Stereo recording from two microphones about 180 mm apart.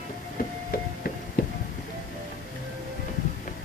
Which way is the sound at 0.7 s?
60° left (ahead or behind).